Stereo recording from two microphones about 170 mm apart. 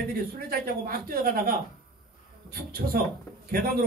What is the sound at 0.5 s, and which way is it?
A man's voice, 60° right (ahead or behind).